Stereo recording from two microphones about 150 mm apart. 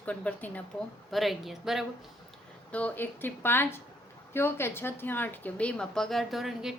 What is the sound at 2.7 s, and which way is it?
A woman's voice, 10° left (ahead or behind).